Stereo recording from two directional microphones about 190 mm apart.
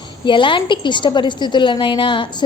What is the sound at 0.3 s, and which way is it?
A woman's voice, 25° left (ahead or behind).